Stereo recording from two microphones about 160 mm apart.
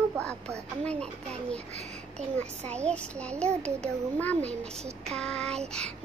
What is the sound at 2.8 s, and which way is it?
A child's voice, 5° left (ahead or behind).